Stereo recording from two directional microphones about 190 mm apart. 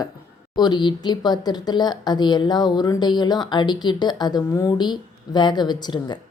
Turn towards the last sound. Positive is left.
turn(degrees=20)  # may be behind; listen again after turning